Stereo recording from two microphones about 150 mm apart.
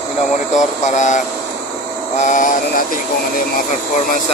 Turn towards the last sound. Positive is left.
turn(degrees=60)  # may be behind; listen again after turning